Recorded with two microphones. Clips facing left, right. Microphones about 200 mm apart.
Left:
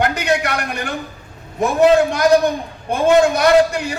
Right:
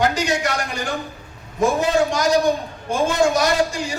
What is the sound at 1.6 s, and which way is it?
A man's voice, 60° left (ahead or behind).